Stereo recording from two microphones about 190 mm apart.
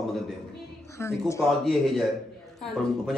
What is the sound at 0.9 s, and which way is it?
Speech, 15° left (ahead or behind).